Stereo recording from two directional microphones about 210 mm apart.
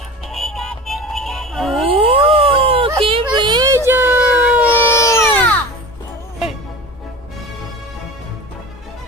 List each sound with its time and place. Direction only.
0.3 s music: centre (ahead or behind)
1.9 s a sound: 25° right (ahead or behind); by 4.7 s 5° right (ahead or behind)
4.7 s baby cry: 10° left (ahead or behind)